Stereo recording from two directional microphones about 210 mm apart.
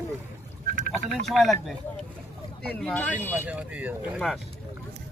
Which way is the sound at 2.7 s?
5° left (ahead or behind).